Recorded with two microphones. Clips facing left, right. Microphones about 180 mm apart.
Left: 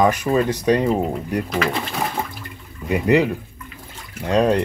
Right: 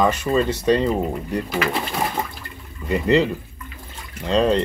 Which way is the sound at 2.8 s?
10° left (ahead or behind).